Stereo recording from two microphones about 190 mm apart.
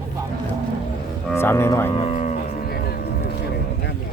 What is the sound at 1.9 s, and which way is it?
Speech, 30° left (ahead or behind).